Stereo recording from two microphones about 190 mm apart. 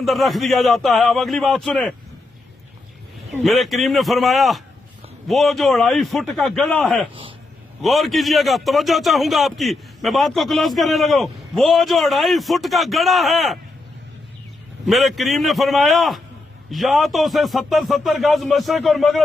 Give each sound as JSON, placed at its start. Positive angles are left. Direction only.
{"t": 0.0, "sound": "a man's voice", "side_deg": 0}
{"t": 3.4, "sound": "a man's voice", "side_deg": 0}
{"t": 7.1, "sound": "speech", "side_deg": -30}
{"t": 7.8, "sound": "a man's voice", "side_deg": 0}
{"t": 14.8, "sound": "a man's voice", "side_deg": 0}